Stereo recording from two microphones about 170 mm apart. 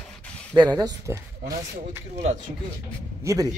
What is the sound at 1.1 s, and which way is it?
Speech, 15° right (ahead or behind).